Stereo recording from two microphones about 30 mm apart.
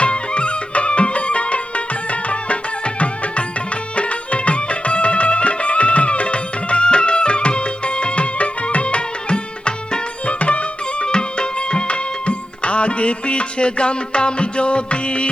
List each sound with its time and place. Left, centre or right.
0.0 s music: left
9.3 s music: left
10.2 s music: left
11.0 s music: left